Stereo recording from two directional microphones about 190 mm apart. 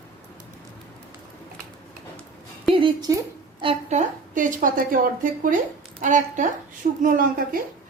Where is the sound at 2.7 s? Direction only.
25° right (ahead or behind); by 7.0 s 45° right (ahead or behind).